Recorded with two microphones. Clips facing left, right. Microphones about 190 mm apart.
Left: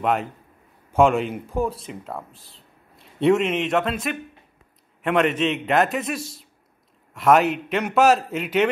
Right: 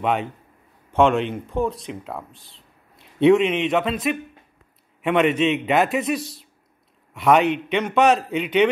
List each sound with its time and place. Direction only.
0.0 s speech: centre (ahead or behind)